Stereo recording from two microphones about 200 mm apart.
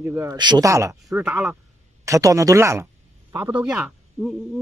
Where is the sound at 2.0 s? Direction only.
15° right (ahead or behind).